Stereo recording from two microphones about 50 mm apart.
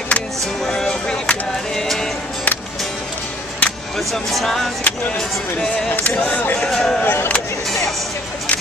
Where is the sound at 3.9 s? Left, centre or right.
Centre.